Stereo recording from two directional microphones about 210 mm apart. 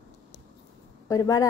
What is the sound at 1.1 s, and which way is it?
Speech, 15° left (ahead or behind).